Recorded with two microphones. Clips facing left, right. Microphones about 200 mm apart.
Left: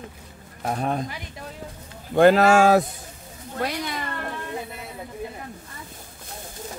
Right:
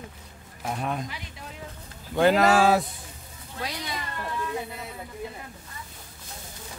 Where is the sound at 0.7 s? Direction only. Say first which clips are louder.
Left 4 dB; 35° left (ahead or behind).